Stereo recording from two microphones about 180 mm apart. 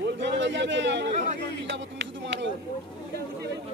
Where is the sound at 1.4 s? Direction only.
75° right (ahead or behind).